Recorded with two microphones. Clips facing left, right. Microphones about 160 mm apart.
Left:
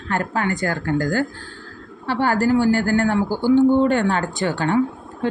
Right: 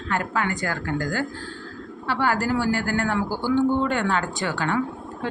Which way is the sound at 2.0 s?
30° left (ahead or behind).